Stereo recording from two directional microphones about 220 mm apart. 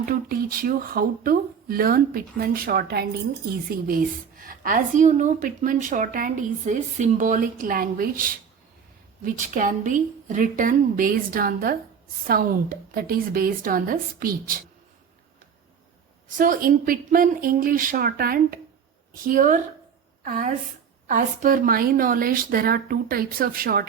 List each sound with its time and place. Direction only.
0.0 s a woman's voice: 40° right (ahead or behind)
16.4 s a woman's voice: 40° right (ahead or behind)